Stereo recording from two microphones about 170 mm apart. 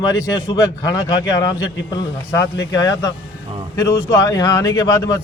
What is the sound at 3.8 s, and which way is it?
A man's voice, 20° left (ahead or behind).